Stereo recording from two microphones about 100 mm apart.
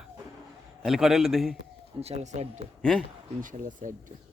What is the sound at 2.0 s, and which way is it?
Speech, 90° right.